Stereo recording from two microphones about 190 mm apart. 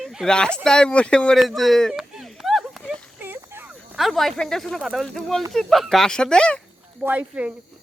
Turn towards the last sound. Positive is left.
turn(degrees=-10)  # may be behind; listen again after turning